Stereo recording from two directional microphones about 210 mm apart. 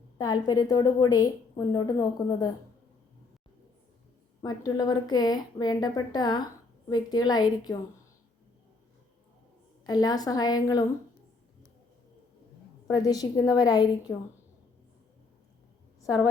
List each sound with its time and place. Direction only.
0.2 s a woman's voice: 20° left (ahead or behind)
4.4 s a woman's voice: 20° left (ahead or behind)
9.8 s a woman's voice: 20° left (ahead or behind)
12.9 s a woman's voice: 20° left (ahead or behind)